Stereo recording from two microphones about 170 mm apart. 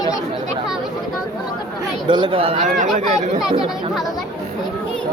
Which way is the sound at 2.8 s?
45° right (ahead or behind).